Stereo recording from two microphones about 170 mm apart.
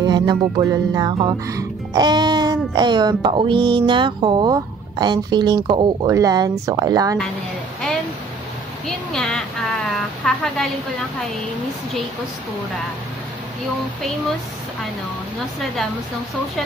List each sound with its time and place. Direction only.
0.0 s music: 25° right (ahead or behind)
1.5 s speech: 20° right (ahead or behind)
8.8 s a sound: centre (ahead or behind)